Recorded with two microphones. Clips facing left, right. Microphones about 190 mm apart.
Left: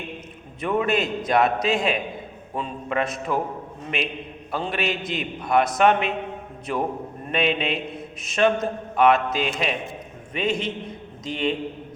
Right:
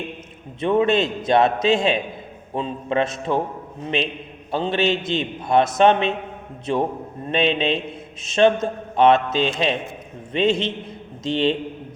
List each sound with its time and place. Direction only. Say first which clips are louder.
0.6 s a man's voice: right 5 dB; 25° right (ahead or behind)